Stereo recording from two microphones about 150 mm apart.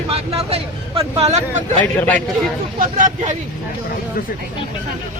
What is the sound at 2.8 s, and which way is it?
Speech, 60° right (ahead or behind).